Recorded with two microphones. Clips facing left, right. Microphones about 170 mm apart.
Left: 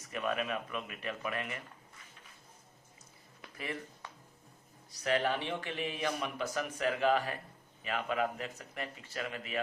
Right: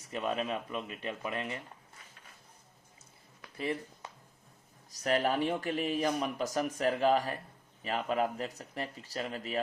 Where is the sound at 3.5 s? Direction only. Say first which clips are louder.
Right 6 dB; 30° right (ahead or behind).